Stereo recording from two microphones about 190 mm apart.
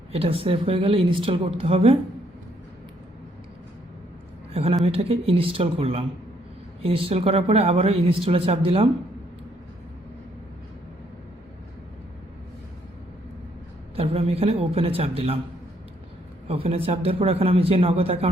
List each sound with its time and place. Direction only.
0.1 s speech: 30° right (ahead or behind)
4.5 s a woman's voice: 30° right (ahead or behind)
13.9 s speech: 30° right (ahead or behind)
16.5 s speech: 30° right (ahead or behind)